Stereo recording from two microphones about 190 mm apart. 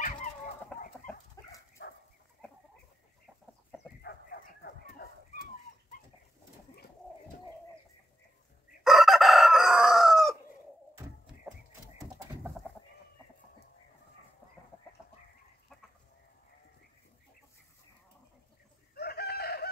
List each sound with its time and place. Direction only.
0.7 s livestock: 10° left (ahead or behind)
1.0 s dog: 20° left (ahead or behind)
1.8 s dog: 60° left (ahead or behind)
4.0 s dog: 60° left (ahead or behind)
8.8 s chicken: centre (ahead or behind)
18.9 s chicken: 55° left (ahead or behind)